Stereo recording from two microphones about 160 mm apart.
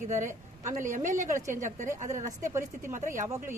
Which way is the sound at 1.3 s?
20° right (ahead or behind).